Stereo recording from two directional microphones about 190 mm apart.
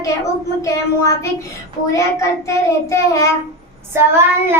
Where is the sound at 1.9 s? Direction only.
15° left (ahead or behind).